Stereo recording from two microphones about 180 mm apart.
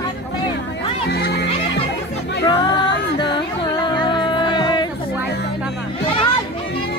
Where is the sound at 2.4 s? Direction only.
25° left (ahead or behind).